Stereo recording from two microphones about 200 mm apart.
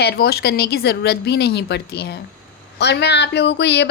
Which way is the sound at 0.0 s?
50° left (ahead or behind).